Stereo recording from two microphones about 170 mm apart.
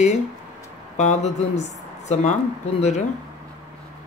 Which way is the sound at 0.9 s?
45° left (ahead or behind).